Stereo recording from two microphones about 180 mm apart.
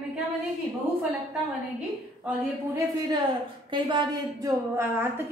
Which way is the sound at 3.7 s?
25° right (ahead or behind).